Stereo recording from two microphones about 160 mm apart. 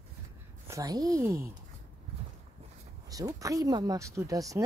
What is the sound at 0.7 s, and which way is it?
Speech, 20° right (ahead or behind).